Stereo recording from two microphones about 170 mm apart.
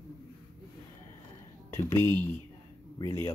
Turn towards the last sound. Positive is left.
turn(degrees=20)  # may be behind; listen again after turning